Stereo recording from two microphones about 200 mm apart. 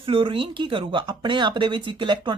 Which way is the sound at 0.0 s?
25° right (ahead or behind).